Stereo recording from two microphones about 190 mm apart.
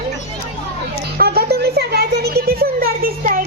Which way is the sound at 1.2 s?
55° right (ahead or behind).